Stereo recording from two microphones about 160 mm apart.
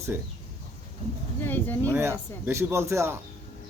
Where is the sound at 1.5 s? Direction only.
10° left (ahead or behind).